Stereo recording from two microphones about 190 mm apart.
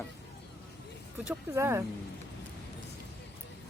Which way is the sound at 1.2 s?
10° right (ahead or behind).